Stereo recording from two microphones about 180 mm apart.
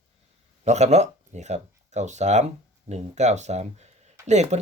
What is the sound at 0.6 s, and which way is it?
Speech, 40° right (ahead or behind).